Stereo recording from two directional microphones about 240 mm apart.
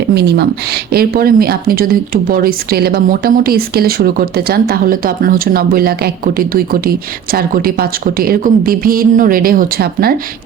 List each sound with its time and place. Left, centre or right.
0.1 s speech: right